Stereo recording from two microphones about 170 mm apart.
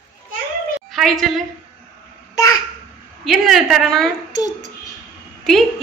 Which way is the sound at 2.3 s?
20° left (ahead or behind).